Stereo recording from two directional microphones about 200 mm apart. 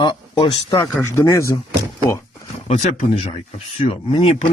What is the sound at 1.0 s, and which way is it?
Speech, 15° left (ahead or behind).